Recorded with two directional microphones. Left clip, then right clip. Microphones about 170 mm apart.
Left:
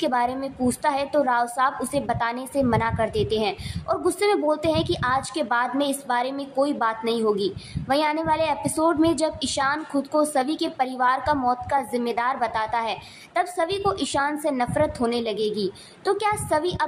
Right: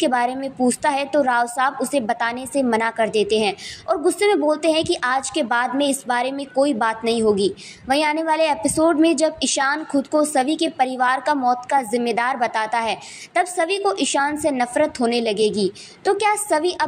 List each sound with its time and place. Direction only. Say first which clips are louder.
0.0 s a woman's voice: right 3 dB; 15° right (ahead or behind)